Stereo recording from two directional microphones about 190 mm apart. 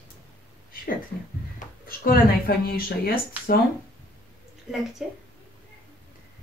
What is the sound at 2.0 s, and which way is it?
Speech, 50° left (ahead or behind).